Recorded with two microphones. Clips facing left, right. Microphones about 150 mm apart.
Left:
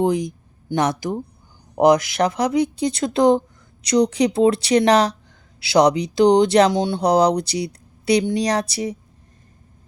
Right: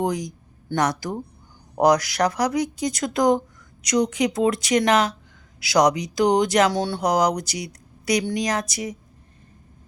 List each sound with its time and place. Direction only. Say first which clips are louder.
0.0 s speech: left 5 dB; 25° left (ahead or behind)